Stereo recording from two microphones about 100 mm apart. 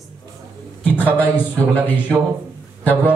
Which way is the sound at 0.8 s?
15° left (ahead or behind).